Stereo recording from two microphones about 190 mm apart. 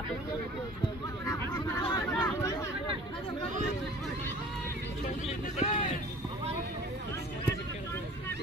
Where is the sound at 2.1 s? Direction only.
5° left (ahead or behind).